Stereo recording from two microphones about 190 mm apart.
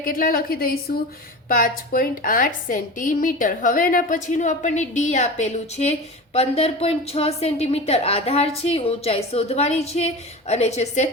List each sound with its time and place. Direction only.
0.0 s a woman's voice: 50° left (ahead or behind)